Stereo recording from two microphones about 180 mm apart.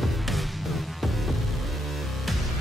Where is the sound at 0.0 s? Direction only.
Centre (ahead or behind).